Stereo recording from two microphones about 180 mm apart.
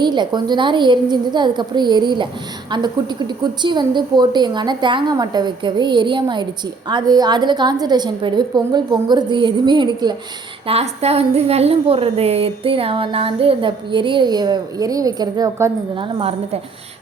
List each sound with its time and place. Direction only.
0.0 s a woman's voice: 25° right (ahead or behind)